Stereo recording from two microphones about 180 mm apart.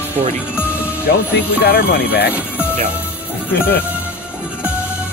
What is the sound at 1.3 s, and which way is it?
Speech, 60° left (ahead or behind).